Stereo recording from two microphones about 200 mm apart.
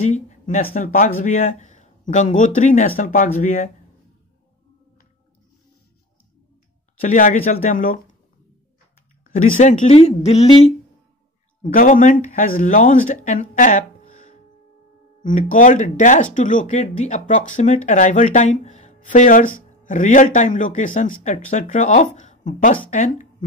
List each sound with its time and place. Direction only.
0.0 s speech: 35° left (ahead or behind)
7.0 s speech: 40° left (ahead or behind)
9.2 s speech: 40° left (ahead or behind)
11.6 s speech: 45° left (ahead or behind)